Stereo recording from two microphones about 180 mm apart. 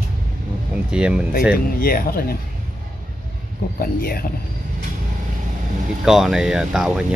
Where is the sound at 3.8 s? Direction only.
60° left (ahead or behind).